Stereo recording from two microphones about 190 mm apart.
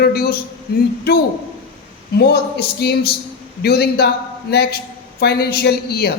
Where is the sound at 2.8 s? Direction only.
55° left (ahead or behind).